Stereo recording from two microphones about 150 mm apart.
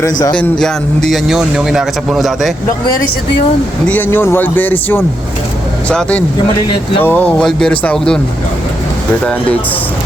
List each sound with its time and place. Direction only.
0.0 s a man's voice: 30° left (ahead or behind)
0.3 s a man's voice: 5° left (ahead or behind)
3.8 s speech: 10° left (ahead or behind)